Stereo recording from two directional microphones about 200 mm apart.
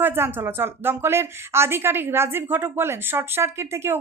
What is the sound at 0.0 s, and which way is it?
Speech, 10° right (ahead or behind).